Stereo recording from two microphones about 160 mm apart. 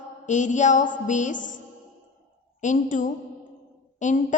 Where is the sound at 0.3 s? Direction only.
50° left (ahead or behind).